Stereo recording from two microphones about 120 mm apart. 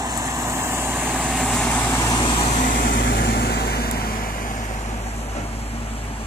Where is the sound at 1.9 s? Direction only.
25° left (ahead or behind).